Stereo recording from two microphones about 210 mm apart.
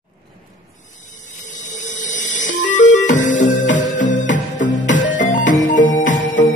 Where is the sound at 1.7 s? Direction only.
35° left (ahead or behind).